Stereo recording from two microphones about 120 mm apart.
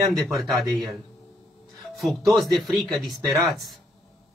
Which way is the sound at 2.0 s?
Centre (ahead or behind).